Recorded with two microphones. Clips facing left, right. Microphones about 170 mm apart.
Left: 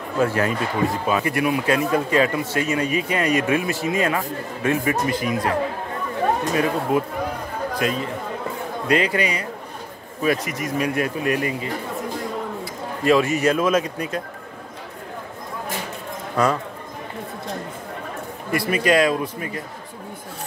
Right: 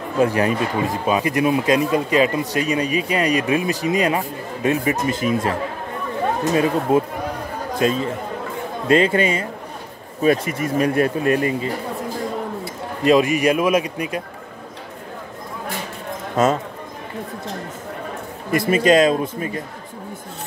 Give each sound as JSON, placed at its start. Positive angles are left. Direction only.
{"t": 0.2, "sound": "a man's voice", "side_deg": -15}
{"t": 6.5, "sound": "speech", "side_deg": -25}
{"t": 13.0, "sound": "a man's voice", "side_deg": -15}
{"t": 16.4, "sound": "speech", "side_deg": -20}
{"t": 18.5, "sound": "speech", "side_deg": -25}